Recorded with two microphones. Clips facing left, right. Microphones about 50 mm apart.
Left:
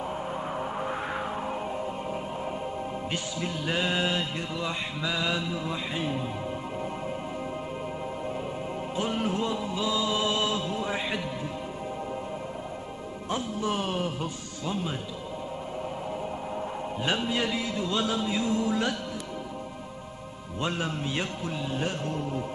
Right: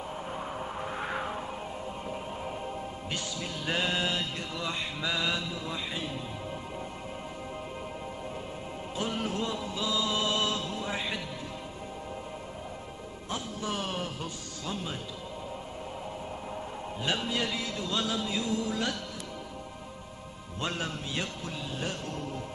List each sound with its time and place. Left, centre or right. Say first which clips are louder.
0.6 s a sound: left 5 dB; centre
1.0 s a sound: left 2 dB; centre
3.1 s music: left 4 dB; left
3.6 s music: left 2 dB; centre; by 6.2 s left
8.9 s music: left 3 dB; centre
13.3 s music: left 5 dB; left
17.2 s music: left 3 dB; centre
20.6 s music: left 3 dB; centre
21.1 s music: left 4 dB; left